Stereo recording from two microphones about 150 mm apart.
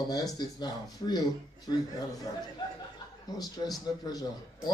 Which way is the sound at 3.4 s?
25° left (ahead or behind).